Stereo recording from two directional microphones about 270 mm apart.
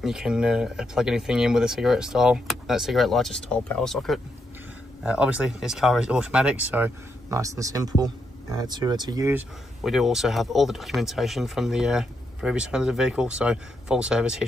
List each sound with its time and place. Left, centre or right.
0.0 s speech: centre
9.8 s speech: centre